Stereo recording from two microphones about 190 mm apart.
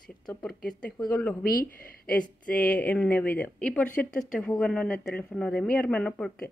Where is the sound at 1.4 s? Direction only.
50° left (ahead or behind).